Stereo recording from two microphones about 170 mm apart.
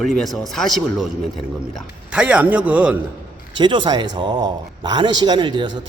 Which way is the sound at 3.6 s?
25° right (ahead or behind).